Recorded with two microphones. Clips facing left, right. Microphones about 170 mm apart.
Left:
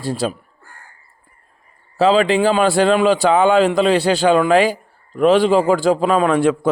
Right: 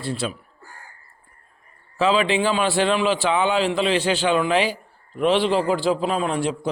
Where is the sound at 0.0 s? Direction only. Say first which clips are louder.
Left 5 dB; 40° left (ahead or behind).